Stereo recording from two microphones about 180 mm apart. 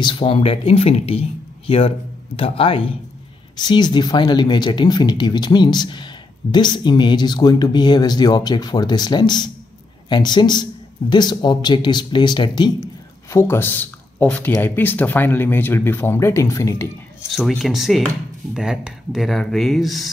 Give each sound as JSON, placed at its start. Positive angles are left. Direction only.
{"t": 0.0, "sound": "speech", "side_deg": 30}
{"t": 13.3, "sound": "speech", "side_deg": 15}
{"t": 17.3, "sound": "speech", "side_deg": 0}